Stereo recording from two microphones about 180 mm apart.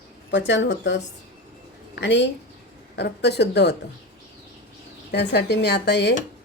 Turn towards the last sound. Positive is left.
turn(degrees=70)  # may be behind; listen again after turning